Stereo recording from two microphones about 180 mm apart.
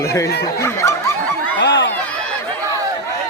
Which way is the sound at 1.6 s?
75° left (ahead or behind).